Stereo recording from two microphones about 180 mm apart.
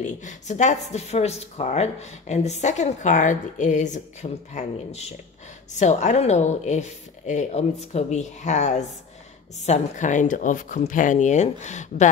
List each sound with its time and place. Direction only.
0.0 s speech: 40° left (ahead or behind)